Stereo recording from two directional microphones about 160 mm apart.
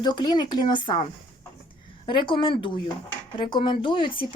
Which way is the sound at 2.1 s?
30° left (ahead or behind).